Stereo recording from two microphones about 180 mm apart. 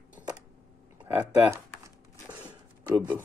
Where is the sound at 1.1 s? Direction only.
10° right (ahead or behind).